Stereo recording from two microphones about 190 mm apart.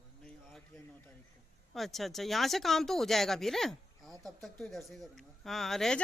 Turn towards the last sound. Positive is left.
turn(degrees=0)  # may be behind; listen again after turning